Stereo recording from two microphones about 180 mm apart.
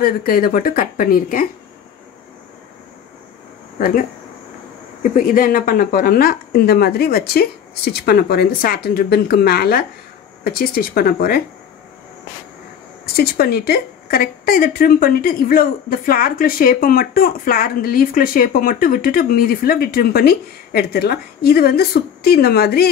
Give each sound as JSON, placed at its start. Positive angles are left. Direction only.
{"t": 0.0, "sound": "a woman's voice", "side_deg": 55}
{"t": 3.7, "sound": "speech", "side_deg": 50}
{"t": 5.0, "sound": "speech", "side_deg": 50}
{"t": 13.0, "sound": "a woman's voice", "side_deg": 60}